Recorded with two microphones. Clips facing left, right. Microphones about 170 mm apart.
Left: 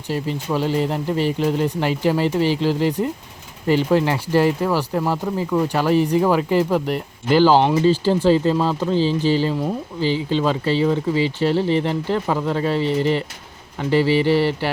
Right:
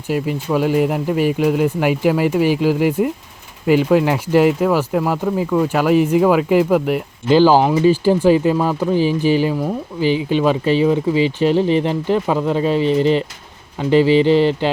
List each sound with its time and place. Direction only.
0.1 s speech: 10° right (ahead or behind)
4.9 s speech: centre (ahead or behind); by 14.7 s 20° right (ahead or behind)